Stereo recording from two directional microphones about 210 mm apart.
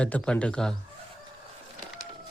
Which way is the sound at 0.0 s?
5° left (ahead or behind).